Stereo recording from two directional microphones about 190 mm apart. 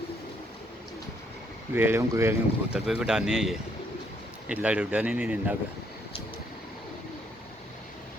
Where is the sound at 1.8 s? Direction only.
10° right (ahead or behind).